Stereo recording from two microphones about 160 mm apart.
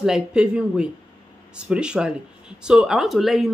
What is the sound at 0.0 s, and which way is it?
Speech, 5° right (ahead or behind).